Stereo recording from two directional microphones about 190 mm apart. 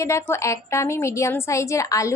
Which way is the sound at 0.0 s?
15° left (ahead or behind).